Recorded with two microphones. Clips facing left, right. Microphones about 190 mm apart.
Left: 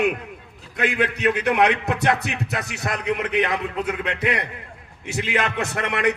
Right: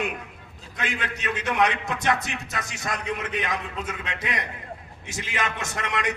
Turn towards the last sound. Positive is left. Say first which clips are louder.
# left 6 dB
turn(degrees=60)  # may be behind; listen again after turning